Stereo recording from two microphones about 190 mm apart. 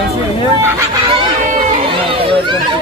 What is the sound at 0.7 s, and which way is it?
Speech, 20° right (ahead or behind).